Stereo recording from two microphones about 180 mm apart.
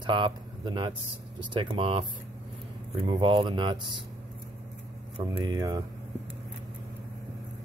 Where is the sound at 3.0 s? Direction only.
25° right (ahead or behind).